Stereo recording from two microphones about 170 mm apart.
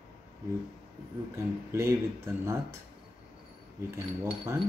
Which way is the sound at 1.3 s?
15° right (ahead or behind).